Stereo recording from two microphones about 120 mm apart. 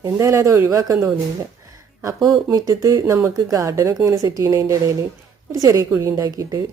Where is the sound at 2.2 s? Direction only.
30° right (ahead or behind).